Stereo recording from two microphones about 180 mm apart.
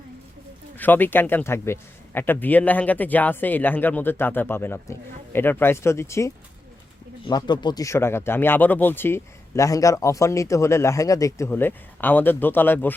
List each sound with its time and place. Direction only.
0.8 s speech: 10° left (ahead or behind)